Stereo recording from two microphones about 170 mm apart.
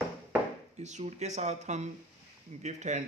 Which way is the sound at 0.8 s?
40° right (ahead or behind).